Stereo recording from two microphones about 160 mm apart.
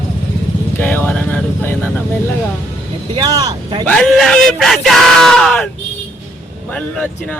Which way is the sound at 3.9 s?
5° left (ahead or behind).